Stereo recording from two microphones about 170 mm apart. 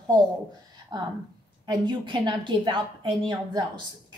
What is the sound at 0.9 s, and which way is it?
A woman's voice, 25° right (ahead or behind).